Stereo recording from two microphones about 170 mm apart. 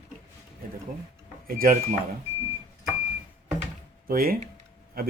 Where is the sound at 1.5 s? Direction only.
55° right (ahead or behind).